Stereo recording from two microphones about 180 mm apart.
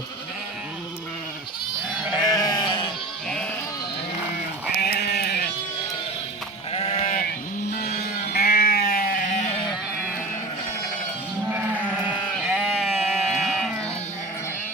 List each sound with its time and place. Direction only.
2.2 s sheep: 20° left (ahead or behind)
4.8 s sheep: 65° left (ahead or behind)
6.7 s sheep: 40° left (ahead or behind)
11.9 s sheep: 5° right (ahead or behind)